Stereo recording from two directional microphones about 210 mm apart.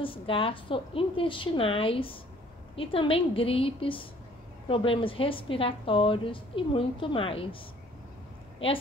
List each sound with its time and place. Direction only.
0.0 s a woman's voice: 25° left (ahead or behind)